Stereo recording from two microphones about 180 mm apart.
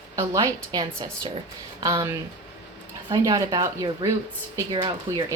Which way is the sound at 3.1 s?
20° right (ahead or behind).